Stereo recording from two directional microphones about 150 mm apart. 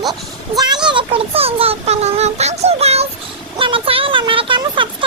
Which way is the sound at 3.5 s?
35° right (ahead or behind).